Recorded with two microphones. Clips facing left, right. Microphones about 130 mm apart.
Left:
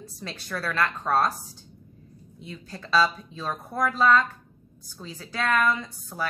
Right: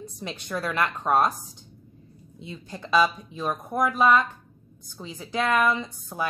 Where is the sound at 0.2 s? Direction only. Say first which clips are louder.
Right 2 dB; 20° right (ahead or behind).